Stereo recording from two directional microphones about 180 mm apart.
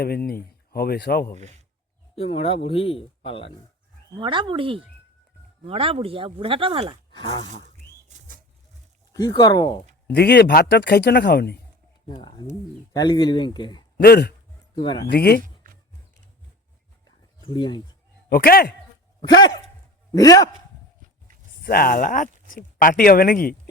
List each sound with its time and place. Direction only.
0.7 s speech: 60° left (ahead or behind)
2.1 s speech: 35° left (ahead or behind)
4.2 s speech: 25° right (ahead or behind)
7.1 s speech: 25° left (ahead or behind)
9.1 s speech: 20° left (ahead or behind)
10.1 s speech: 65° left (ahead or behind)
12.0 s speech: 25° left (ahead or behind)
14.0 s speech: 60° left (ahead or behind)
14.8 s speech: 25° left (ahead or behind)
15.0 s speech: 65° left (ahead or behind)
17.5 s speech: 25° left (ahead or behind)
18.3 s speech: 55° left (ahead or behind)
19.3 s speech: 25° left (ahead or behind)
21.6 s speech: 55° left (ahead or behind)